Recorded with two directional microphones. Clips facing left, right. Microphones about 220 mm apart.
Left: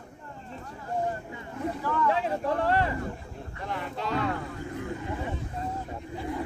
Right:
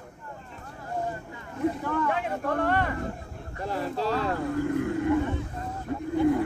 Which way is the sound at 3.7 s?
35° right (ahead or behind).